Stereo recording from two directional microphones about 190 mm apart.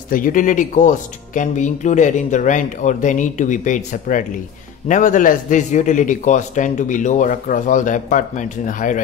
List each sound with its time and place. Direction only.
0.1 s speech: 45° left (ahead or behind)